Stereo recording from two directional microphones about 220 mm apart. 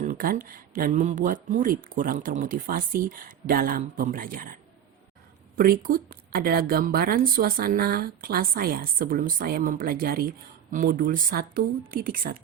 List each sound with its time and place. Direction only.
0.0 s a woman's voice: 40° right (ahead or behind)
5.5 s a woman's voice: 40° right (ahead or behind)